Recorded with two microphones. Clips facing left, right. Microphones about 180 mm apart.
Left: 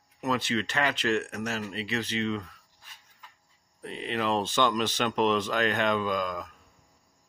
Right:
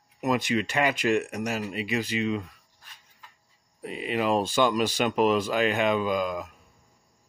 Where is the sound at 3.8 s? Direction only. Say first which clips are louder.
Right 3 dB; 10° right (ahead or behind).